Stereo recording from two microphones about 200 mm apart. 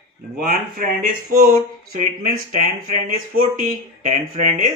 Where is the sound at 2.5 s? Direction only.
45° right (ahead or behind).